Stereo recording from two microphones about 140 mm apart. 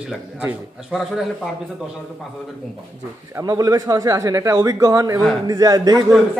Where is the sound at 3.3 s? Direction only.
25° right (ahead or behind).